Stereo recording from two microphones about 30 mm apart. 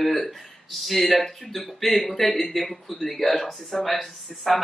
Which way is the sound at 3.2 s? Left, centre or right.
Centre.